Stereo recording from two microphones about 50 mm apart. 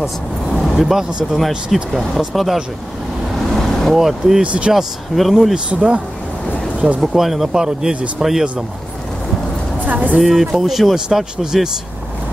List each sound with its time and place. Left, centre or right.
0.0 s speech: centre
3.5 s vehicle: centre
3.9 s speech: centre
4.4 s speech: right
4.7 s speech: centre
5.7 s speech: centre
7.0 s speech: centre
9.8 s speech: right
10.1 s speech: centre